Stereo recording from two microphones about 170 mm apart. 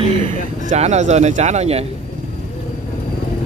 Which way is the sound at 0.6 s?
40° right (ahead or behind).